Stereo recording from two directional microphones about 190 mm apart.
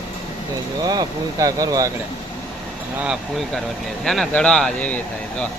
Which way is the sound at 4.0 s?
Centre (ahead or behind).